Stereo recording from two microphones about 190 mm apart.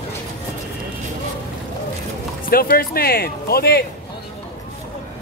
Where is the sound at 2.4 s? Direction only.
50° left (ahead or behind).